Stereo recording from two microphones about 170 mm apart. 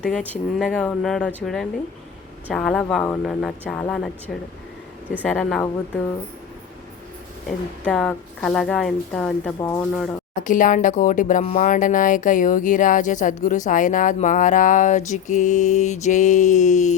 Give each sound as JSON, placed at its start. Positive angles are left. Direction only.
{"t": 0.0, "sound": "speech", "side_deg": 5}
{"t": 2.5, "sound": "speech", "side_deg": 0}
{"t": 5.2, "sound": "speech", "side_deg": 0}
{"t": 7.4, "sound": "speech", "side_deg": 5}
{"t": 9.6, "sound": "speech", "side_deg": 20}
{"t": 9.9, "sound": "speech", "side_deg": 5}
{"t": 10.4, "sound": "speech", "side_deg": 50}